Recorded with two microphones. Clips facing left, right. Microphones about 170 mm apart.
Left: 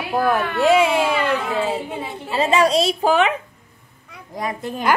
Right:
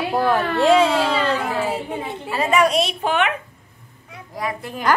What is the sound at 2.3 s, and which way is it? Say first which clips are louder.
A woman's voice: left 1 dB; 25° left (ahead or behind).